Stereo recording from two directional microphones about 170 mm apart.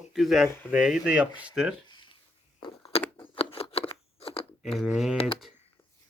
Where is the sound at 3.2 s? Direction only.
35° left (ahead or behind).